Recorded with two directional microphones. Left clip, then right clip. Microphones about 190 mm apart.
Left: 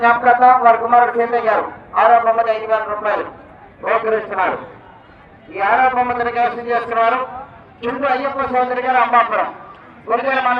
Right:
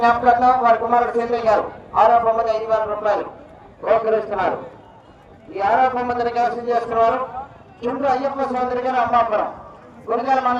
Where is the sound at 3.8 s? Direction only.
35° right (ahead or behind).